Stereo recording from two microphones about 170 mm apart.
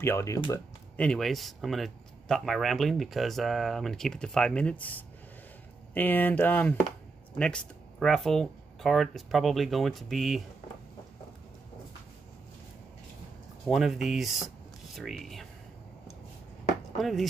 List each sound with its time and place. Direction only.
0.0 s speech: 15° left (ahead or behind)
0.9 s speech: 5° left (ahead or behind)
13.7 s speech: centre (ahead or behind)
17.0 s speech: centre (ahead or behind)